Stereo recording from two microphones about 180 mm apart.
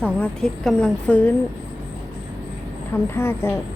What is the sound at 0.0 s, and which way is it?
Speech, 5° left (ahead or behind).